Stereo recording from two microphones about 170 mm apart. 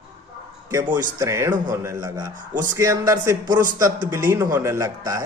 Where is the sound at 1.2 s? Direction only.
20° right (ahead or behind).